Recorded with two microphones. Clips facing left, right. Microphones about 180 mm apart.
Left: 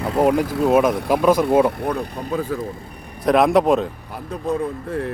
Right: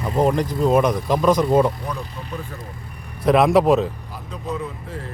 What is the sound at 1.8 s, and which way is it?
Speech, 60° left (ahead or behind).